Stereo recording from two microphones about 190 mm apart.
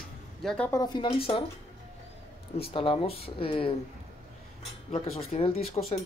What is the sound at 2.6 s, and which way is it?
Speech, 25° left (ahead or behind).